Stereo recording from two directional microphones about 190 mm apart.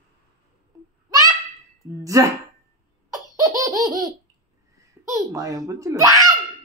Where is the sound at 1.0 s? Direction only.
20° right (ahead or behind).